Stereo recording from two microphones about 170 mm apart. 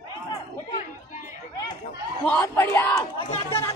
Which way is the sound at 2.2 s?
10° left (ahead or behind).